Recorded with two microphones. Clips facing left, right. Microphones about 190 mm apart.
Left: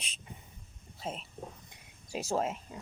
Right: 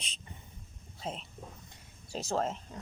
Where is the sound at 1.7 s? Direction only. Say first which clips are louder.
Right 1 dB; 10° left (ahead or behind).